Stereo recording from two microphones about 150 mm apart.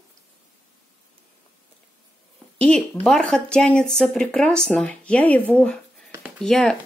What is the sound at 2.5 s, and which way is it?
Speech, 5° left (ahead or behind).